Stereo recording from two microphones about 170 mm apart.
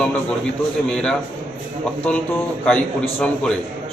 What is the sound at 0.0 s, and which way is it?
A man's voice, 5° left (ahead or behind).